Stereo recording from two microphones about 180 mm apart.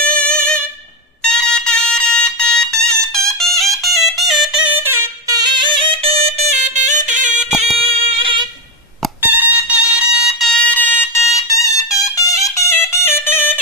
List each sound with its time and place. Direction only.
0.0 s music: 5° left (ahead or behind)
1.2 s fire alarm: 5° left (ahead or behind)
3.1 s music: centre (ahead or behind)
5.6 s music: 25° right (ahead or behind)
7.8 s singing: 30° right (ahead or behind)
9.2 s fire alarm: 10° right (ahead or behind); by 11.5 s 15° left (ahead or behind)
12.0 s music: 20° left (ahead or behind)